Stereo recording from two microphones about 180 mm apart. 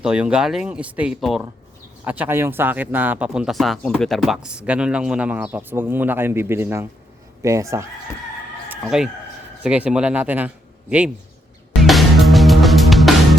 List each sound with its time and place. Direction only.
0.0 s speech: 5° right (ahead or behind)
8.7 s a sound: 5° right (ahead or behind)
9.6 s speech: 5° right (ahead or behind)
11.8 s music: centre (ahead or behind)